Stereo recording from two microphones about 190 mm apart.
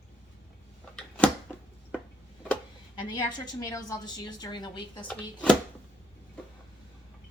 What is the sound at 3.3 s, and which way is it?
A woman's voice, 20° left (ahead or behind).